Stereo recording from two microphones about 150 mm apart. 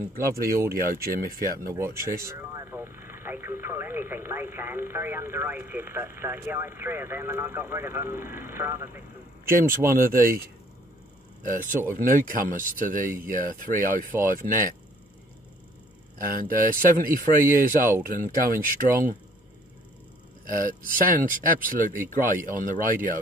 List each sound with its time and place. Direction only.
0.1 s speech: 75° right (ahead or behind)
1.7 s speech: 20° right (ahead or behind)
9.5 s speech: 75° right (ahead or behind)
11.9 s speech: 65° right (ahead or behind)
16.2 s speech: 70° right (ahead or behind)
20.4 s speech: 65° right (ahead or behind)